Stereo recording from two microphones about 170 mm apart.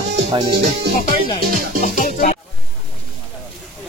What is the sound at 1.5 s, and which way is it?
Music, 55° right (ahead or behind).